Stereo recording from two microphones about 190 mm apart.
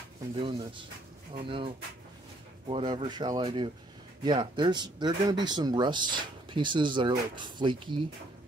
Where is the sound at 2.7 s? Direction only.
25° right (ahead or behind).